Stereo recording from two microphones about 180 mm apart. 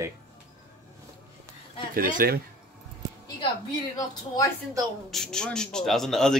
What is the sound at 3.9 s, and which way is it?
Speech, 20° left (ahead or behind).